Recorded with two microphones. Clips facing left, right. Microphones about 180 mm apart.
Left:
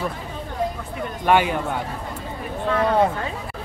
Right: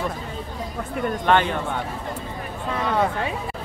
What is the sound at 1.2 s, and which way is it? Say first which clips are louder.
Speech: left 2 dB; 10° left (ahead or behind).